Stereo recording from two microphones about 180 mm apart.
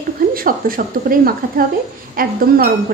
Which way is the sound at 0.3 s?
55° right (ahead or behind).